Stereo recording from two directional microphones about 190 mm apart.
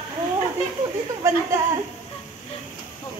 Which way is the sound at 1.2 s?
15° right (ahead or behind).